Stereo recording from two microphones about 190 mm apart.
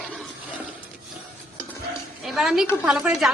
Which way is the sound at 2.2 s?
Centre (ahead or behind).